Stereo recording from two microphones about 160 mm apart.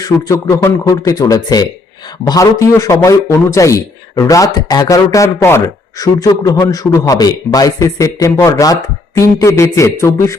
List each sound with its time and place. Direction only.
0.0 s a man's voice: 20° left (ahead or behind)